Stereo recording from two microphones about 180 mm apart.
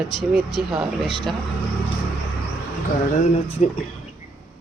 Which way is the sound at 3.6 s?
40° left (ahead or behind).